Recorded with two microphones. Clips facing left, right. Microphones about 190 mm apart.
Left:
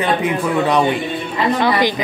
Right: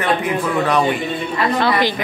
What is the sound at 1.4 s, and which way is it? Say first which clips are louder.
Speech: left 2 dB; 15° left (ahead or behind).